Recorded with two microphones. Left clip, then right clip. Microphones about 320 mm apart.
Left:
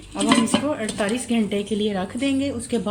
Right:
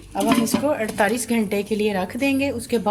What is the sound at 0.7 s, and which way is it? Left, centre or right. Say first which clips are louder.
A woman's voice: right 4 dB; right.